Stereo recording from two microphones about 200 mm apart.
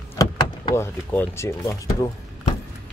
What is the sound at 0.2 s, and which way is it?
Vehicle, 20° left (ahead or behind).